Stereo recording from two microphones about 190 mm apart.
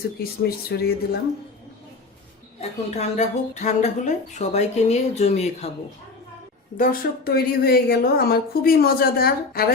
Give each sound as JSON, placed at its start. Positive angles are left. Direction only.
{"t": 0.2, "sound": "speech", "side_deg": 55}
{"t": 2.6, "sound": "speech", "side_deg": 35}
{"t": 6.7, "sound": "a woman's voice", "side_deg": 50}